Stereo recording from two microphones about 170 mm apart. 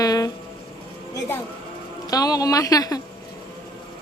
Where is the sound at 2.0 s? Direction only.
20° left (ahead or behind).